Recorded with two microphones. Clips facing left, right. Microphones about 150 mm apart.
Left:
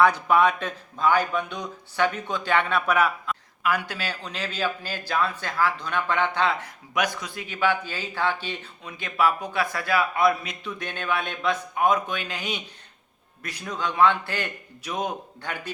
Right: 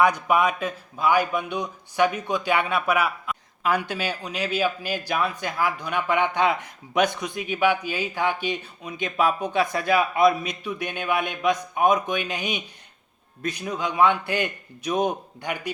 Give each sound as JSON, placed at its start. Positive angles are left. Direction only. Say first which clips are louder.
{"t": 0.0, "sound": "speech", "louder": "left 1 dB", "side_deg": -15}
{"t": 3.6, "sound": "speech", "louder": "right 3 dB", "side_deg": -20}